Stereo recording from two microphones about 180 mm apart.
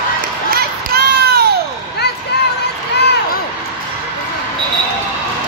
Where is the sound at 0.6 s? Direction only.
60° right (ahead or behind).